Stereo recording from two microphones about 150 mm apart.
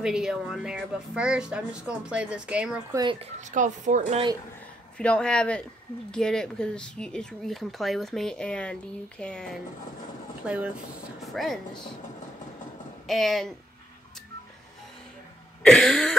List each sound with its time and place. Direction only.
0.0 s a woman's voice: 5° right (ahead or behind)
2.9 s speech: 25° right (ahead or behind)
3.2 s speech: 50° right (ahead or behind)
4.9 s a woman's voice: 10° left (ahead or behind)
10.4 s speech: 10° right (ahead or behind)
11.3 s a woman's voice: centre (ahead or behind)
13.0 s a woman's voice: centre (ahead or behind)
15.6 s cough: 5° left (ahead or behind)